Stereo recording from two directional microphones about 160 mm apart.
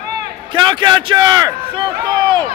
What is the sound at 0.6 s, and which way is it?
Speech, 30° right (ahead or behind).